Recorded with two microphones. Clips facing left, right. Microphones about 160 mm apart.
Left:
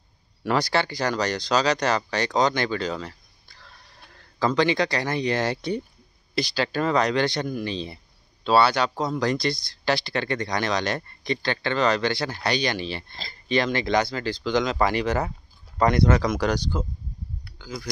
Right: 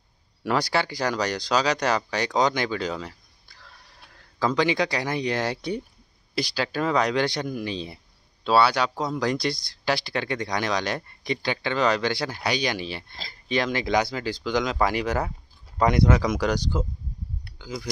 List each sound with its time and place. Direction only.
0.4 s speech: 5° right (ahead or behind)
17.6 s speech: 15° right (ahead or behind)